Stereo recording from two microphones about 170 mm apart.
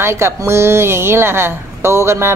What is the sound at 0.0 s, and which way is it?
A woman's voice, 15° right (ahead or behind).